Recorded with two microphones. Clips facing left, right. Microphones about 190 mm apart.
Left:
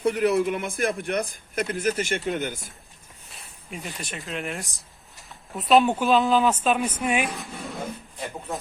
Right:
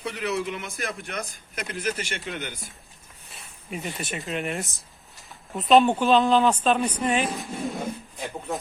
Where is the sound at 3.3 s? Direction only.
Centre (ahead or behind).